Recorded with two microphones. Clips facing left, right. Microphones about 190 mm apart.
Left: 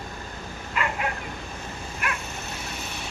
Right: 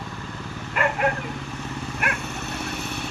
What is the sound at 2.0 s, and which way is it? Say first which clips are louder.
Dog: right 2 dB; 65° right (ahead or behind).